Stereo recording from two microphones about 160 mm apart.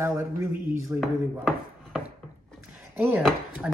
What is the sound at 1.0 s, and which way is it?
Speech, centre (ahead or behind).